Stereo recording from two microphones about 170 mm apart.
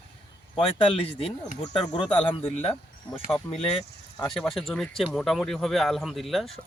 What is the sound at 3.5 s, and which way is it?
Speech, 35° left (ahead or behind).